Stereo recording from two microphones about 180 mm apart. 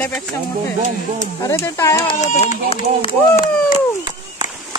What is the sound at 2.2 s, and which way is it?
Speech, 40° left (ahead or behind).